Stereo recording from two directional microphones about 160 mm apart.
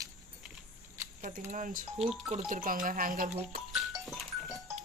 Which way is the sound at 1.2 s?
50° right (ahead or behind).